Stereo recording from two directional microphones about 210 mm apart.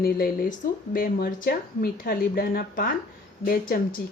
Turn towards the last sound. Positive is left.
turn(degrees=45)  # may be behind; listen again after turning